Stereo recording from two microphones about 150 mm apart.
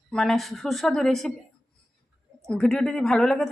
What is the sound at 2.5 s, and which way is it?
A woman's voice, 5° left (ahead or behind).